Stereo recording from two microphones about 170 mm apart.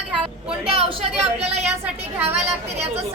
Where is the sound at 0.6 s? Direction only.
35° right (ahead or behind).